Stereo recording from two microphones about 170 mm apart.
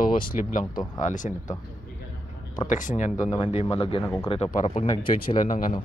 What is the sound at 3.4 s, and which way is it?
A man's voice, 35° left (ahead or behind).